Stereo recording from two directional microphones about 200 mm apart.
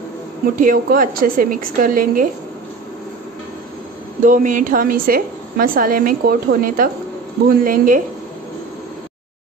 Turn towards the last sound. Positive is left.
turn(degrees=-45)  # may be behind; listen again after turning